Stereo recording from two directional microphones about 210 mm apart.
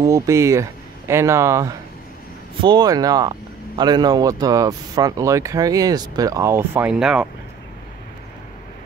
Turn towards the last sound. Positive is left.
turn(degrees=-5)  # may be behind; listen again after turning